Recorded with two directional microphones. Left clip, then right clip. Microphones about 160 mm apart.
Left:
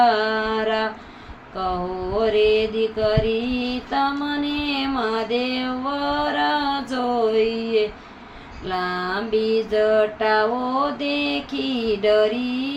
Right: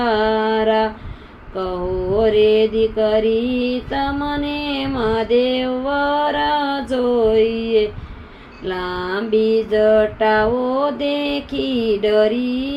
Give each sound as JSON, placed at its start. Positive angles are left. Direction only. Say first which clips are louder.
{"t": 0.0, "sound": "mantra", "louder": "right 1 dB", "side_deg": -50}
{"t": 8.6, "sound": "a sound", "louder": "right 1 dB", "side_deg": -50}
{"t": 10.9, "sound": "mantra", "louder": "right 3 dB", "side_deg": -50}